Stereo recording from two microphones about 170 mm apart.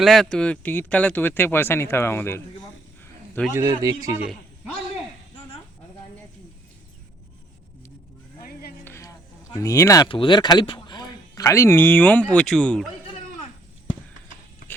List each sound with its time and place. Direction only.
0.0 s speech: centre (ahead or behind)
3.5 s a man's voice: 20° right (ahead or behind)
4.2 s a sound: centre (ahead or behind)
8.4 s music: 60° left (ahead or behind)
8.8 s a sound: 15° left (ahead or behind)
9.5 s speech: 20° left (ahead or behind)